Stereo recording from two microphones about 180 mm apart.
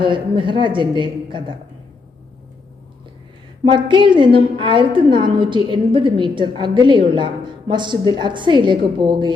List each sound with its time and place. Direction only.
0.0 s a woman's voice: 25° right (ahead or behind)
3.6 s a woman's voice: 25° right (ahead or behind)